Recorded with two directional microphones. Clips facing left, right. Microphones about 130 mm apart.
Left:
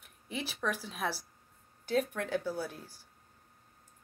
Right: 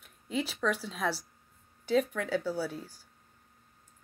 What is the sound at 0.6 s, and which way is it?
Speech, 15° left (ahead or behind).